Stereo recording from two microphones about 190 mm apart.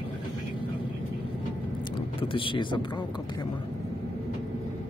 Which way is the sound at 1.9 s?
25° left (ahead or behind).